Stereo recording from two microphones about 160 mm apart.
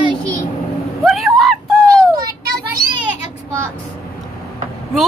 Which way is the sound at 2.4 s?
65° right (ahead or behind).